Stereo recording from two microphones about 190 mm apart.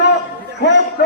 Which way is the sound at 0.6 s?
65° left (ahead or behind).